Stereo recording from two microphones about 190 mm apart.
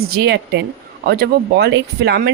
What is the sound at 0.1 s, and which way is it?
Speech, 60° right (ahead or behind).